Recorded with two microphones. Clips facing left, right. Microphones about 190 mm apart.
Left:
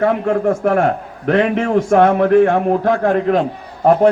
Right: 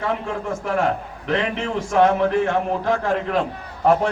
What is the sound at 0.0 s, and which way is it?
A man's voice, 50° left (ahead or behind).